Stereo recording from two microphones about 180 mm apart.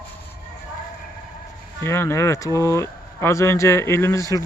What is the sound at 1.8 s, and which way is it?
A man's voice, 15° left (ahead or behind).